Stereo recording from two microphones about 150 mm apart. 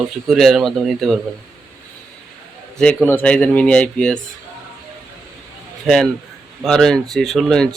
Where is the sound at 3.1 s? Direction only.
10° left (ahead or behind).